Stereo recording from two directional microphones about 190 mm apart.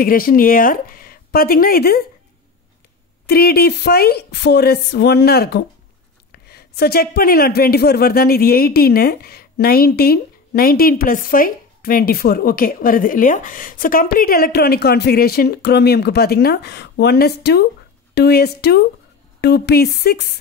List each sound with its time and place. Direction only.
0.0 s speech: 50° left (ahead or behind)
3.3 s a woman's voice: 55° left (ahead or behind)